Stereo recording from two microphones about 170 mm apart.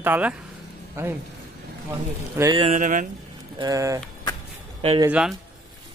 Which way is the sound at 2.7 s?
50° right (ahead or behind).